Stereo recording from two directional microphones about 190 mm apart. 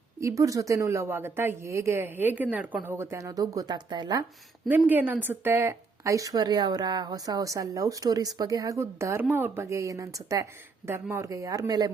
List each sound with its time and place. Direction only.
0.2 s speech: 15° right (ahead or behind)
4.7 s speech: 10° right (ahead or behind)